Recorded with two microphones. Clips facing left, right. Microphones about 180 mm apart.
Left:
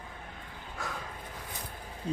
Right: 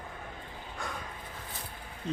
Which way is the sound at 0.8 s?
5° left (ahead or behind).